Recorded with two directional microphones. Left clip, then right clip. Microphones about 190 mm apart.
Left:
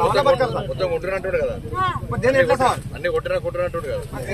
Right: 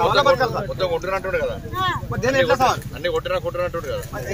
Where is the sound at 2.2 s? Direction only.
20° left (ahead or behind).